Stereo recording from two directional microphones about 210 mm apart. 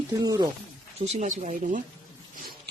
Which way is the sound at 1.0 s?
30° right (ahead or behind).